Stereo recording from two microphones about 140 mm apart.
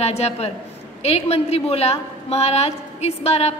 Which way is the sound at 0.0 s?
50° left (ahead or behind).